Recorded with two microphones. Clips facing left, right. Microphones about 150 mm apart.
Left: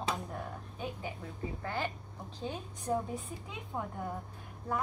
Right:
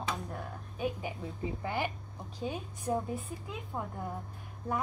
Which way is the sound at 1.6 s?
15° right (ahead or behind).